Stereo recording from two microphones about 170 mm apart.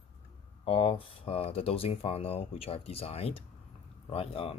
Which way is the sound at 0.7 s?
35° left (ahead or behind).